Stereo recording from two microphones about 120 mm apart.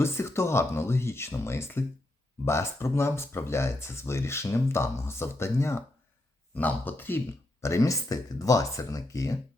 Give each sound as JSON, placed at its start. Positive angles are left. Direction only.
{"t": 0.0, "sound": "speech", "side_deg": 20}